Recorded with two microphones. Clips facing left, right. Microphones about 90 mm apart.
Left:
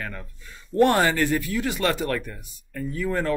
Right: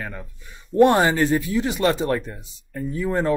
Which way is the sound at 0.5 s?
20° right (ahead or behind).